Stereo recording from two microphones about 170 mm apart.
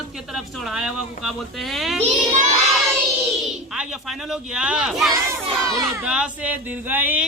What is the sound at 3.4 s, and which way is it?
Speech, 5° right (ahead or behind).